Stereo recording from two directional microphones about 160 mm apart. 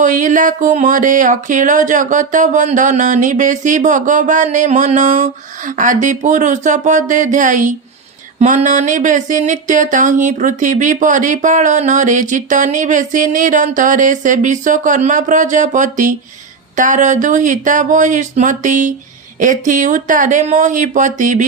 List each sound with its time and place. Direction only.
0.0 s speech: 55° right (ahead or behind)